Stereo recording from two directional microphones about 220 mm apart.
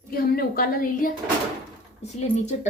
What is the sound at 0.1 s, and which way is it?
A woman's voice, 45° left (ahead or behind).